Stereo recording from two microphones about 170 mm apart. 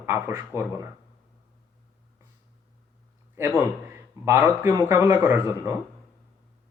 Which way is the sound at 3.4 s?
15° right (ahead or behind).